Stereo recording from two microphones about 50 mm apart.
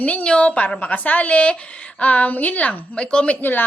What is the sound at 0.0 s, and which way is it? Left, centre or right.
A woman's voice, left.